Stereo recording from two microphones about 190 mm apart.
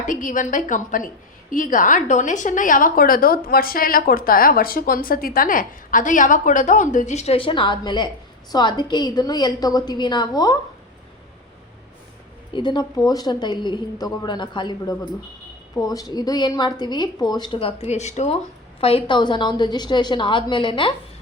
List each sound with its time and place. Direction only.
0.1 s a woman's voice: 45° left (ahead or behind); by 10.6 s 20° left (ahead or behind)
12.5 s a woman's voice: 25° left (ahead or behind)